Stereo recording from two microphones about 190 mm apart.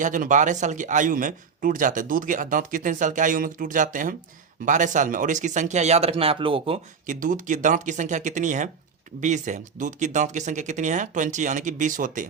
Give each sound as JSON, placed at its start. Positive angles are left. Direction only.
{"t": 0.0, "sound": "a man's voice", "side_deg": -45}
{"t": 7.1, "sound": "speech", "side_deg": -45}